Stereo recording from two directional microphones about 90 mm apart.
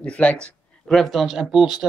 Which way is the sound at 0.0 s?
15° left (ahead or behind).